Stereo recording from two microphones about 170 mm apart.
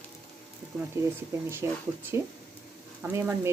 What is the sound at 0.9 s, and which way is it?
Speech, 15° right (ahead or behind).